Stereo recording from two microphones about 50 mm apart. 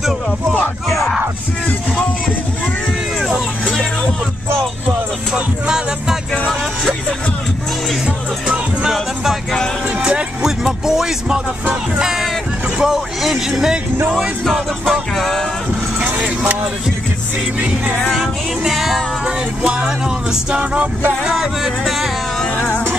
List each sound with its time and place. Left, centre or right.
5.3 s music: centre
10.4 s music: centre
12.0 s a sound: centre
12.7 s vehicle: centre
14.4 s music: centre
16.0 s vehicle: right
18.1 s music: centre
19.2 s music: centre
21.3 s music: centre